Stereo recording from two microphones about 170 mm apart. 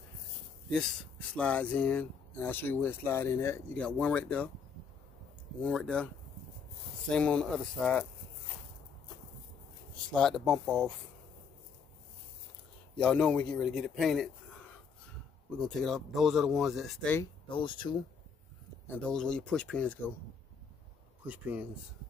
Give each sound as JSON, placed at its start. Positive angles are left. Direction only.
{"t": 1.3, "sound": "speech", "side_deg": 5}
{"t": 5.6, "sound": "speech", "side_deg": 5}
{"t": 7.1, "sound": "speech", "side_deg": 5}
{"t": 10.1, "sound": "speech", "side_deg": 0}
{"t": 12.9, "sound": "speech", "side_deg": 5}
{"t": 15.5, "sound": "speech", "side_deg": 5}
{"t": 17.5, "sound": "speech", "side_deg": 30}
{"t": 18.9, "sound": "speech", "side_deg": 5}
{"t": 21.3, "sound": "speech", "side_deg": -10}